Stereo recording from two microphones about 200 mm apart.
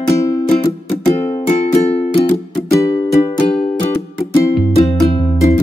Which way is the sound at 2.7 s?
15° left (ahead or behind).